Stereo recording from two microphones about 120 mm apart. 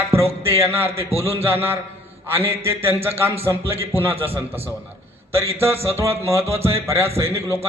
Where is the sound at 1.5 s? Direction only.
20° right (ahead or behind).